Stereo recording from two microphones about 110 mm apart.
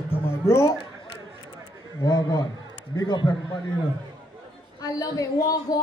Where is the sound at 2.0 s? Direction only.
35° left (ahead or behind).